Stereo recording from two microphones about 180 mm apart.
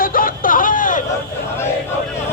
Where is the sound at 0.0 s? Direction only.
50° left (ahead or behind).